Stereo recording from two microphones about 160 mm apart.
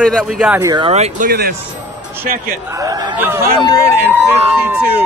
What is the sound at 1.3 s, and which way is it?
Speech, 75° right (ahead or behind).